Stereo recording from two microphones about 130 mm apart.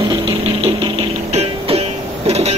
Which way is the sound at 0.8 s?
40° right (ahead or behind).